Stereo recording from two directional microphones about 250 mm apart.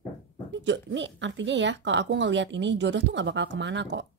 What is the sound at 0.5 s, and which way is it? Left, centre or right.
Speech, right.